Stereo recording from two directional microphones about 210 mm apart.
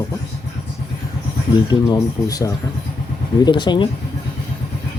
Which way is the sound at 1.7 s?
20° left (ahead or behind).